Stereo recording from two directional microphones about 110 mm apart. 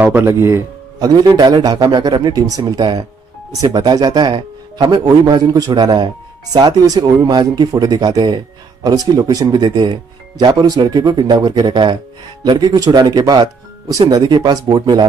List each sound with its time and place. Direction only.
0.0 s speech: 20° right (ahead or behind)
0.9 s speech: 40° right (ahead or behind)